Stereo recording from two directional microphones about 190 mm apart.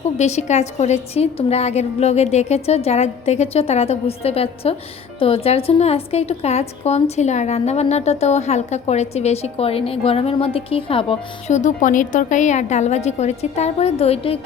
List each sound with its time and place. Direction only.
0.2 s a woman's voice: 35° left (ahead or behind)